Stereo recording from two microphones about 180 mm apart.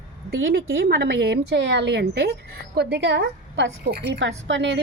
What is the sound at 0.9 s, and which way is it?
A woman's voice, 65° right (ahead or behind).